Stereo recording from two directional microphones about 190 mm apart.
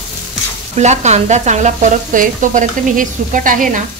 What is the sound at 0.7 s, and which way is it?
Sizzle, 35° right (ahead or behind).